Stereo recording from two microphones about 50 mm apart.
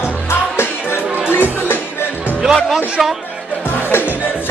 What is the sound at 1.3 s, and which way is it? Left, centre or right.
Music, left.